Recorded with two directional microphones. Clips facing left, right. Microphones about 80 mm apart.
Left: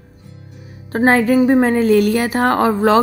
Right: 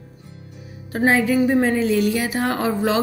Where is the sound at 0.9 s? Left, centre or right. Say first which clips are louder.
Left 5 dB; left.